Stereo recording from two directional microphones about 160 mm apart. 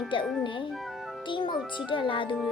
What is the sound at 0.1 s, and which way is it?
Speech, 30° left (ahead or behind).